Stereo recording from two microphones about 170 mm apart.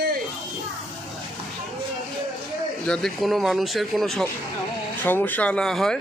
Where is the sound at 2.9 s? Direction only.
5° left (ahead or behind).